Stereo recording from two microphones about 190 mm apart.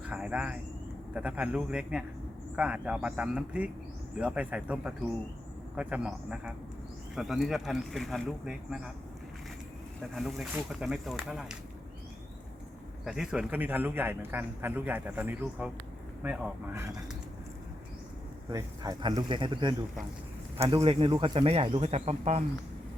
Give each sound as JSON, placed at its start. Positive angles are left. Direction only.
{"t": 0.0, "sound": "a sound", "side_deg": -5}
{"t": 1.1, "sound": "speech", "side_deg": -5}
{"t": 10.2, "sound": "speech", "side_deg": 0}
{"t": 13.1, "sound": "a man's voice", "side_deg": -5}
{"t": 18.5, "sound": "speech", "side_deg": -20}
{"t": 20.7, "sound": "speech", "side_deg": -30}